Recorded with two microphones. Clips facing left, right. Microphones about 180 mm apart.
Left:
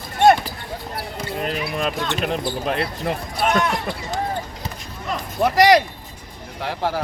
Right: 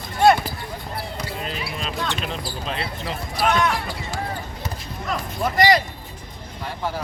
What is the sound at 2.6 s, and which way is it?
Speech, 55° left (ahead or behind).